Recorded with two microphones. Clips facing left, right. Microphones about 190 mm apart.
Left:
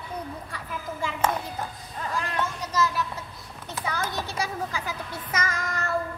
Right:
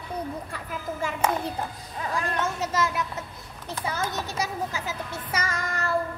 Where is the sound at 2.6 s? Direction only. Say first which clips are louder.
Left 1 dB; 25° right (ahead or behind).